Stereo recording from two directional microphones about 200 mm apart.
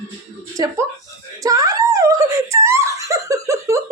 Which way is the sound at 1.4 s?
15° right (ahead or behind).